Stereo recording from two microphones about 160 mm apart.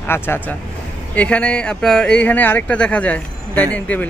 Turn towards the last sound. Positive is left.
turn(degrees=10)  # may be behind; listen again after turning